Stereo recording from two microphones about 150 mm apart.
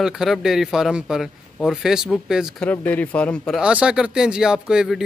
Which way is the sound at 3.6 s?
5° right (ahead or behind).